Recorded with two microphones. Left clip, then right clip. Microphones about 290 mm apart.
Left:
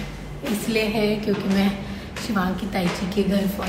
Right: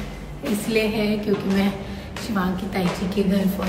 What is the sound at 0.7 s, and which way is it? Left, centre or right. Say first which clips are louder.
A woman's voice: even; centre.